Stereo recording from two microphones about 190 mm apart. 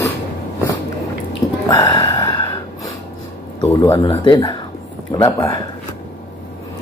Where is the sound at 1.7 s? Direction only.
20° left (ahead or behind).